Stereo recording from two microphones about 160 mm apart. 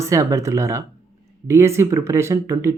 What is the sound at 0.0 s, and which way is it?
Speech, 20° right (ahead or behind).